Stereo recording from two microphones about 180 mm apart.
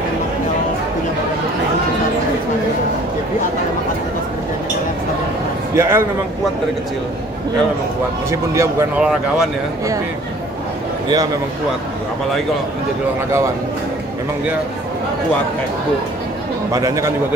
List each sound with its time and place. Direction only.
5.8 s a man's voice: 15° right (ahead or behind)
8.3 s a man's voice: 15° right (ahead or behind)
9.0 s speech: 5° right (ahead or behind)
16.7 s a man's voice: 20° right (ahead or behind)